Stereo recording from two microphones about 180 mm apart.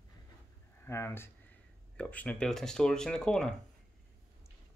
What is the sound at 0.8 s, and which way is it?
Speech, 15° left (ahead or behind).